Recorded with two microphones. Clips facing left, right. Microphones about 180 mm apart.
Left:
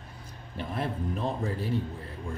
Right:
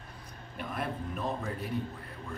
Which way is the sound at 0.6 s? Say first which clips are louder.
Left 3 dB; 30° left (ahead or behind).